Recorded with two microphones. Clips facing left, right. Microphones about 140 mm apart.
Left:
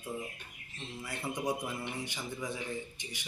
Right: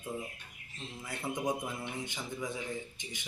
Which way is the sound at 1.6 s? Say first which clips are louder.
Left 1 dB; centre (ahead or behind).